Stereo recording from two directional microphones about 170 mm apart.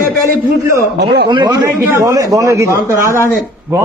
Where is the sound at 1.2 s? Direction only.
25° right (ahead or behind).